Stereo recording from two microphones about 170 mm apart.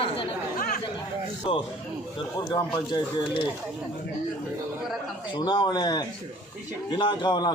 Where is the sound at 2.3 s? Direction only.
25° left (ahead or behind).